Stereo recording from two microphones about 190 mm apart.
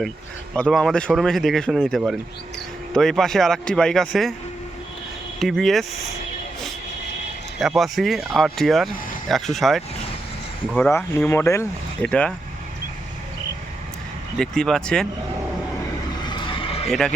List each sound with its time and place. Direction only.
0.5 s speech: 5° left (ahead or behind)
5.4 s speech: centre (ahead or behind)
7.6 s speech: centre (ahead or behind)
10.9 s speech: 10° left (ahead or behind)
14.3 s speech: 5° left (ahead or behind)
16.2 s a sound: 25° left (ahead or behind)
16.9 s speech: 5° left (ahead or behind)